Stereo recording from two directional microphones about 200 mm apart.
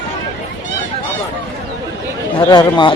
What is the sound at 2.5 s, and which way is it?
Speech, 20° left (ahead or behind).